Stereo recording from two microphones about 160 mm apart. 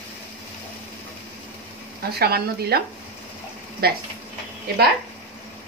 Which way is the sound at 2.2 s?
80° right.